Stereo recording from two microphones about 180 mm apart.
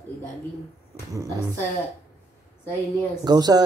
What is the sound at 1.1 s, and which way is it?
Speech, 20° right (ahead or behind).